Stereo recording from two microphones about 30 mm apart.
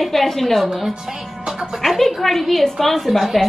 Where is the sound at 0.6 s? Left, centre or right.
Centre.